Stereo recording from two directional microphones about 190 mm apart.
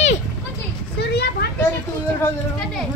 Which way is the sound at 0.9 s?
60° left (ahead or behind).